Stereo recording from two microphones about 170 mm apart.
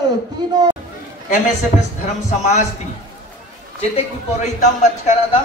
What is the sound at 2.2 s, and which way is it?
Speech, 40° left (ahead or behind).